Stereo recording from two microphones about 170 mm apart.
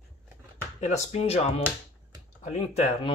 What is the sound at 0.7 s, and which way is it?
Speech, 40° left (ahead or behind).